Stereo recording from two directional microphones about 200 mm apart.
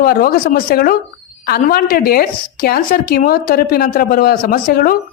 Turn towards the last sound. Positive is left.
turn(degrees=45)  # may be behind; listen again after turning